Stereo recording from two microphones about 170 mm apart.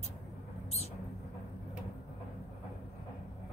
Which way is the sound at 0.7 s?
35° left (ahead or behind).